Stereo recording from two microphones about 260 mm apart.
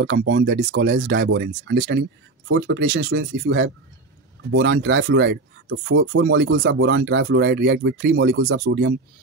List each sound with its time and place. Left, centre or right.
0.0 s speech: right